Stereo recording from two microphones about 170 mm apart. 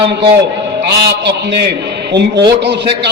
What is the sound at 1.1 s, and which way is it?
A man's voice, 80° right.